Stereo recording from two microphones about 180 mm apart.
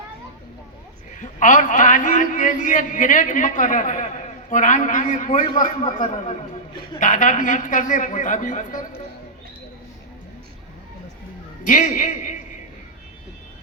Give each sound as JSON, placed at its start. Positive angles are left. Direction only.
{"t": 1.2, "sound": "a man's voice", "side_deg": 45}
{"t": 11.6, "sound": "a man's voice", "side_deg": 45}